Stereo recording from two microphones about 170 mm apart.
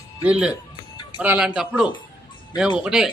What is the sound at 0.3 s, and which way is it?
A man's voice, 5° right (ahead or behind).